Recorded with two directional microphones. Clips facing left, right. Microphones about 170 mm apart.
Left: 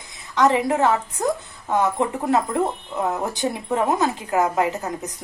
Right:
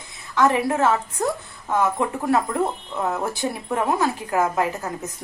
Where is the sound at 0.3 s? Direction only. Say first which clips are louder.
Left 1 dB; 20° left (ahead or behind).